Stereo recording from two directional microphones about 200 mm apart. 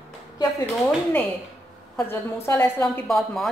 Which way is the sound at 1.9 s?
10° left (ahead or behind).